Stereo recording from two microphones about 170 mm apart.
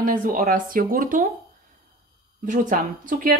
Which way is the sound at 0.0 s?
55° right (ahead or behind).